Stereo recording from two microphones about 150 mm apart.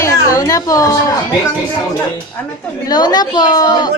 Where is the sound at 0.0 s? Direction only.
20° left (ahead or behind).